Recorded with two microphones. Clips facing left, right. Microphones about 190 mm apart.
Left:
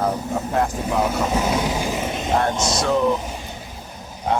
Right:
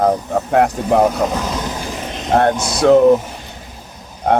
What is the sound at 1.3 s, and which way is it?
Vehicle, 10° left (ahead or behind).